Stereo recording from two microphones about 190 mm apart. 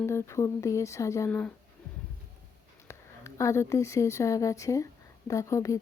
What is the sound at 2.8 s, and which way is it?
A woman's voice, 15° left (ahead or behind).